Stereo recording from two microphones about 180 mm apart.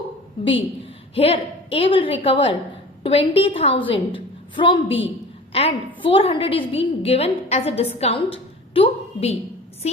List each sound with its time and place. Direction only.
1.1 s a woman's voice: 30° left (ahead or behind)